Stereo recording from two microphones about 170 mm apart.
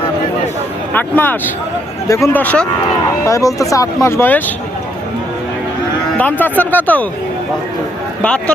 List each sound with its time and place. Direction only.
0.9 s speech: 10° left (ahead or behind)
6.4 s speech: 10° left (ahead or behind)
8.2 s speech: 5° left (ahead or behind)